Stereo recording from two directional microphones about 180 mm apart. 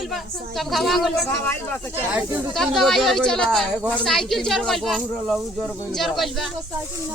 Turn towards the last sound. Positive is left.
turn(degrees=0)  # may be behind; listen again after turning